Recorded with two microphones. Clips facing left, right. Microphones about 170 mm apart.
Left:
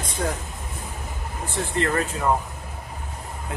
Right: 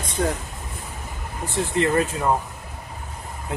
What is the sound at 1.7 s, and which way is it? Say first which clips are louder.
Speech: right 3 dB; 20° right (ahead or behind).